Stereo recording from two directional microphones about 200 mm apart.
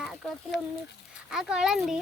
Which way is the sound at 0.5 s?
60° left (ahead or behind).